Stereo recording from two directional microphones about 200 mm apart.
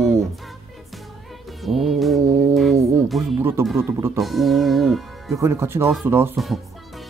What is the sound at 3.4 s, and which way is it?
Speech, 15° right (ahead or behind).